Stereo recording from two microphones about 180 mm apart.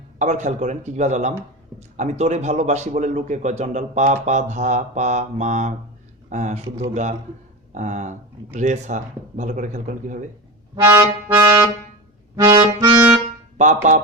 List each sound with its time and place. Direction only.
0.2 s a man's voice: 40° right (ahead or behind)
10.8 s music: 20° right (ahead or behind)
12.4 s accordion: 20° right (ahead or behind)
13.6 s speech: 45° right (ahead or behind)